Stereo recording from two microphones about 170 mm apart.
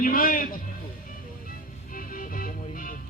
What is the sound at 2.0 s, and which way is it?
Music, 55° left (ahead or behind).